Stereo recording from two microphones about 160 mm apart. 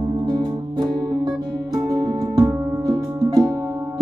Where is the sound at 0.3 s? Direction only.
25° right (ahead or behind).